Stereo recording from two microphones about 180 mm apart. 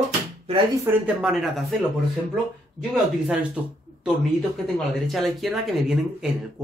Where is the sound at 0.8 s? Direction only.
10° right (ahead or behind).